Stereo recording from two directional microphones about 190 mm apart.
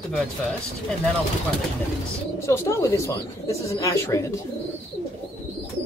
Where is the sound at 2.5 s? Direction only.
15° left (ahead or behind).